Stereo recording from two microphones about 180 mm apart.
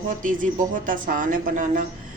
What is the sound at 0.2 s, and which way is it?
A woman's voice, 50° right (ahead or behind).